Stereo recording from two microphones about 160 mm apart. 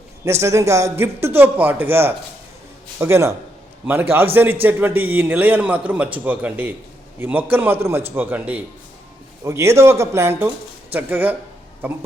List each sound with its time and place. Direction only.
0.3 s a man's voice: 15° right (ahead or behind)
4.6 s a man's voice: 10° right (ahead or behind)